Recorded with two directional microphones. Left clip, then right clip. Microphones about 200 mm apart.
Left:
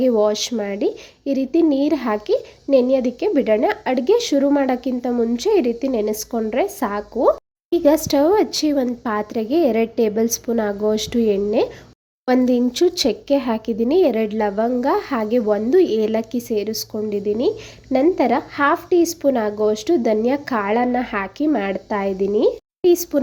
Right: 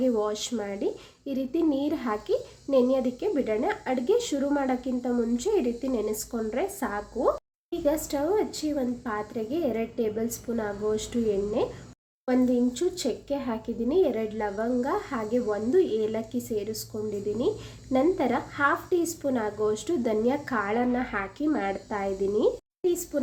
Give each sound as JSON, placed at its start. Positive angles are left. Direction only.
{"t": 0.0, "sound": "a woman's voice", "side_deg": 40}